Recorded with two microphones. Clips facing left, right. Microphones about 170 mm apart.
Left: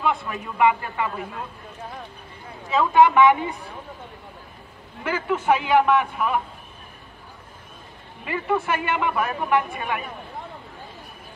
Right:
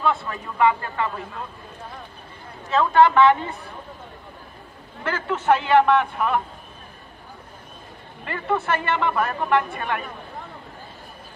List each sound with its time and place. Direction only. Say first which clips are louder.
0.0 s speech: right 1 dB; 15° left (ahead or behind)
2.7 s speech: even; 10° left (ahead or behind)
5.0 s speech: even; 10° left (ahead or behind)
8.3 s speech: even; 10° left (ahead or behind)